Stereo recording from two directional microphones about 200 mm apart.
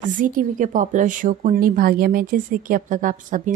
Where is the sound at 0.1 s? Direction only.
40° right (ahead or behind).